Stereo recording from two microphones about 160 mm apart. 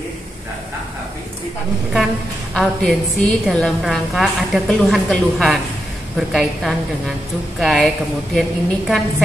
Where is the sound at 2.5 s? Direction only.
5° left (ahead or behind).